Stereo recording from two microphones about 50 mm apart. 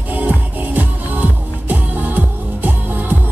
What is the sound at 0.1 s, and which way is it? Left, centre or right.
Music, right.